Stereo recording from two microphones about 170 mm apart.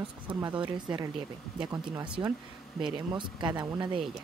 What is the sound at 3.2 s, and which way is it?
Speech, 25° right (ahead or behind).